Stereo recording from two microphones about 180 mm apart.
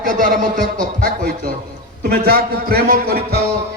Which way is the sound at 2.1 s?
60° right (ahead or behind).